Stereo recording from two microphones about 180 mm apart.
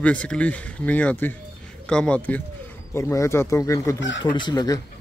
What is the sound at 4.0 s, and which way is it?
Speech, 90° left.